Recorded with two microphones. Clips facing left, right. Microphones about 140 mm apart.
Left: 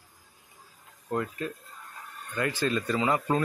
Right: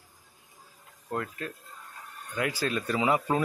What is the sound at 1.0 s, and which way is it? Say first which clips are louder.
Speech: left 3 dB; 5° left (ahead or behind).